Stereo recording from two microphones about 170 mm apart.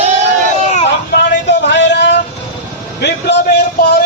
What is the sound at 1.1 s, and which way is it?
A man's voice, 90° left.